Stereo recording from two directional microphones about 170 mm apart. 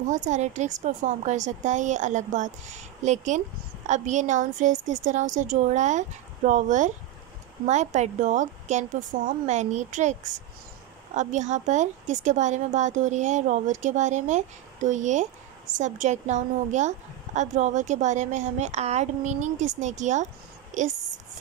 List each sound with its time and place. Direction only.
0.0 s a woman's voice: 45° right (ahead or behind)
11.1 s a woman's voice: 45° right (ahead or behind)